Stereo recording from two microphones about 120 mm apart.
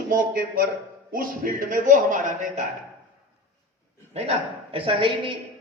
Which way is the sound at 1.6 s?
90° right.